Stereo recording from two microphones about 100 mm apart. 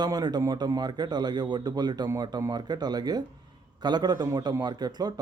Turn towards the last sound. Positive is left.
turn(degrees=-45)  # may be behind; listen again after turning